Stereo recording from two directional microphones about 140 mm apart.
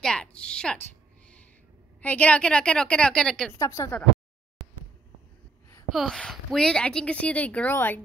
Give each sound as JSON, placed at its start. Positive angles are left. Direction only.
{"t": 0.0, "sound": "a sound", "side_deg": 5}
{"t": 2.0, "sound": "a woman's voice", "side_deg": 10}
{"t": 3.5, "sound": "speech", "side_deg": 20}
{"t": 5.9, "sound": "a woman's voice", "side_deg": 0}